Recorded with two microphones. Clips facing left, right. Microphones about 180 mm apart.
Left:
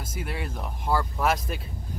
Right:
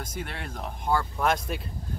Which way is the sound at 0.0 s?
5° left (ahead or behind).